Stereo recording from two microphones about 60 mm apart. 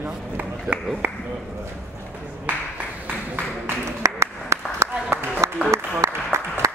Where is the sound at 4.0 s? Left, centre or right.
Right.